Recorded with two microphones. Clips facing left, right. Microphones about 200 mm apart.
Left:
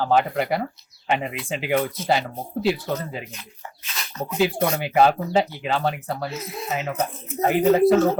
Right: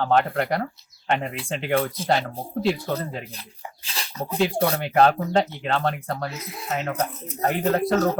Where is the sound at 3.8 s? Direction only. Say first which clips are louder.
Left 1 dB; 30° right (ahead or behind).